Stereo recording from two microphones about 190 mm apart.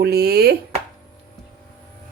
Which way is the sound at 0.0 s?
55° right (ahead or behind).